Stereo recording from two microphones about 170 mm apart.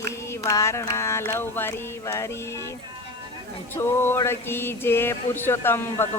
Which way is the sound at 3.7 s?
15° left (ahead or behind).